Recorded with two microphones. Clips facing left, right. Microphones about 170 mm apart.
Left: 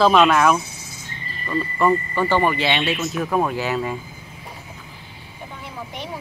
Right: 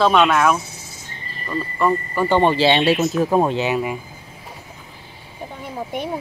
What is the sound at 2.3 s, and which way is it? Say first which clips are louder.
Speech: right 5 dB; 25° right (ahead or behind).